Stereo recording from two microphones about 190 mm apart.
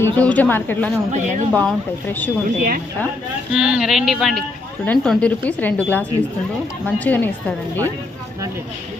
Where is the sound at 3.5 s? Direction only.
5° right (ahead or behind).